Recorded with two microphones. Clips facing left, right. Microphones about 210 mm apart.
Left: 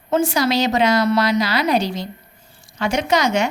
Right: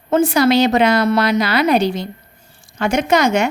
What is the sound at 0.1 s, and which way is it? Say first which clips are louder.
A woman's voice: right 5 dB; 60° right (ahead or behind).